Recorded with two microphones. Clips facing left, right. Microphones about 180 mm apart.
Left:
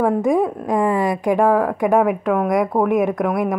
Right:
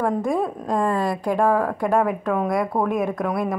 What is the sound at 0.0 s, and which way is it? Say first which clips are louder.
A woman's voice: left 5 dB; 15° left (ahead or behind).